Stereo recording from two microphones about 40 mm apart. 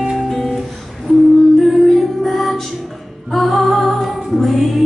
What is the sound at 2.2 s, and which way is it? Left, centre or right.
Music, centre.